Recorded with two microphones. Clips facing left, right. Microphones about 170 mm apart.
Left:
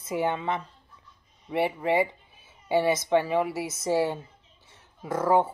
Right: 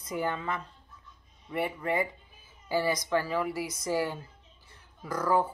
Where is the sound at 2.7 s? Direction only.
25° left (ahead or behind).